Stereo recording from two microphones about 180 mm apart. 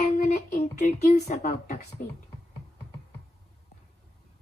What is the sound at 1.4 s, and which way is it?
Speech, 60° left (ahead or behind).